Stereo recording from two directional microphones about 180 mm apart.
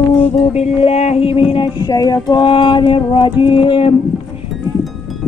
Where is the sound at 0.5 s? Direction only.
35° left (ahead or behind).